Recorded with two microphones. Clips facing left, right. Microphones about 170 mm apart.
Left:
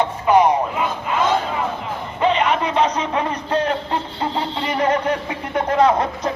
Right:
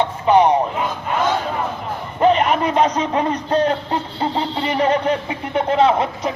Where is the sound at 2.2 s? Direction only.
45° right (ahead or behind).